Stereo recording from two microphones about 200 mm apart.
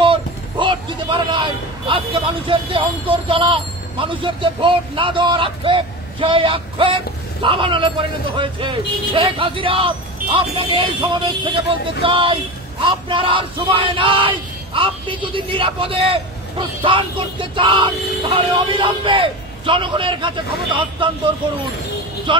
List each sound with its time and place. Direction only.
0.0 s speech: 25° right (ahead or behind)
22.3 s speech: 25° right (ahead or behind)